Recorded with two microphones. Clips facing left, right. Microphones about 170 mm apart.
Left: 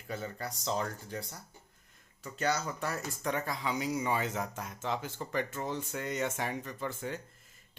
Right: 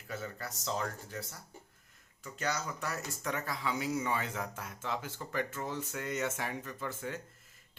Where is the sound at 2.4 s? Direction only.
30° left (ahead or behind).